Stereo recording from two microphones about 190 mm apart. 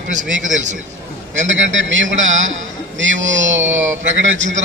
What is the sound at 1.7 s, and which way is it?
A man's voice, 75° right (ahead or behind).